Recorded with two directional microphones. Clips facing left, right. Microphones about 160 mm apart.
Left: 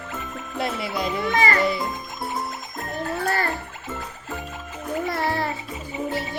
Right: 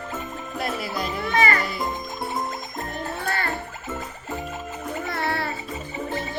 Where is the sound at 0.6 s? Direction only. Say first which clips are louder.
Left 2 dB; 25° left (ahead or behind).